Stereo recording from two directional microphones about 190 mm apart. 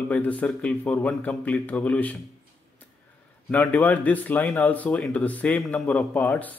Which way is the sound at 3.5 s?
5° left (ahead or behind).